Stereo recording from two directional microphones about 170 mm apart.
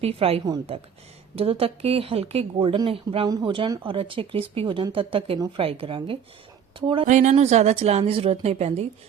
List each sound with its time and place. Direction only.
0.0 s a woman's voice: 35° right (ahead or behind)
7.0 s speech: 45° right (ahead or behind)